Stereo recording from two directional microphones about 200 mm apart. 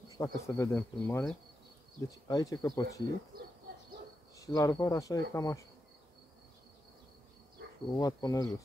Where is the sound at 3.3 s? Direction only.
50° right (ahead or behind).